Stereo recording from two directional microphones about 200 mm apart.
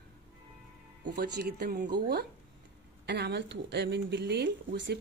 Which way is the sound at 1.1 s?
50° right (ahead or behind).